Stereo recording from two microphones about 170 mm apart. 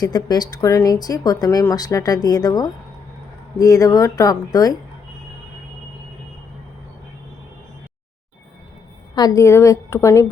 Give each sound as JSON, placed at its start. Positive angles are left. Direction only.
{"t": 0.0, "sound": "speech", "side_deg": 25}
{"t": 9.1, "sound": "a woman's voice", "side_deg": 20}